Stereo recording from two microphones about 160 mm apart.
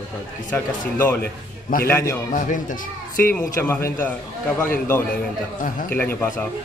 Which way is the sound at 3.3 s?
10° left (ahead or behind).